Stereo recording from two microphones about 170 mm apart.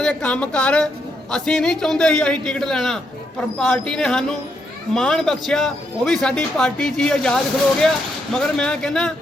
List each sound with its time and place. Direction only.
0.0 s speech: 5° left (ahead or behind)